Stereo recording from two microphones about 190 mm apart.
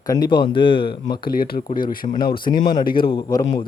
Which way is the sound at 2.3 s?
25° left (ahead or behind).